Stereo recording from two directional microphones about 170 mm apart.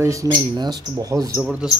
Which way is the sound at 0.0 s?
20° right (ahead or behind).